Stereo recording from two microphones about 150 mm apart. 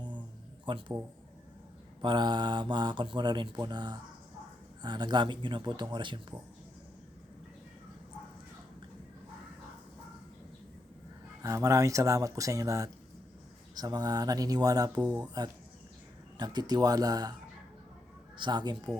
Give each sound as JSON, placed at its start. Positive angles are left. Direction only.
{"t": 0.6, "sound": "speech", "side_deg": -35}
{"t": 2.0, "sound": "speech", "side_deg": -30}
{"t": 11.4, "sound": "speech", "side_deg": -20}
{"t": 16.4, "sound": "speech", "side_deg": -30}
{"t": 18.3, "sound": "speech", "side_deg": -30}